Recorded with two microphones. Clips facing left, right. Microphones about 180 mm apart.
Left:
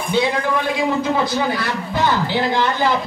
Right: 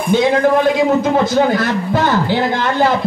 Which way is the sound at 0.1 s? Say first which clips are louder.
Right 7 dB; 50° right (ahead or behind).